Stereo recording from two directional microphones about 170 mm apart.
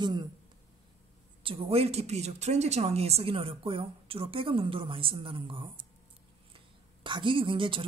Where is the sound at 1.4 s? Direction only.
35° right (ahead or behind).